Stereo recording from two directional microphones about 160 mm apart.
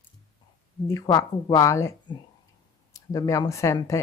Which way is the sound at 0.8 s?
20° left (ahead or behind).